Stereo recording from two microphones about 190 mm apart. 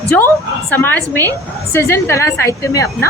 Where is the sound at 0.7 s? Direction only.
10° left (ahead or behind).